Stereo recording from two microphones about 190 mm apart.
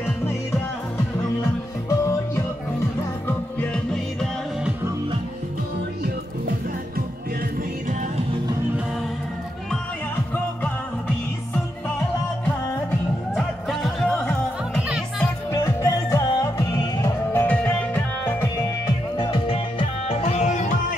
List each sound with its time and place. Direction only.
1.4 s music: 15° left (ahead or behind)
13.3 s music: centre (ahead or behind)
15.5 s music: 15° left (ahead or behind)
19.1 s music: 25° left (ahead or behind)